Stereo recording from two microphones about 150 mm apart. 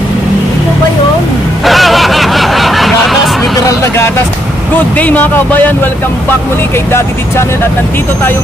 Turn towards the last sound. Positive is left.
turn(degrees=15)  # may be behind; listen again after turning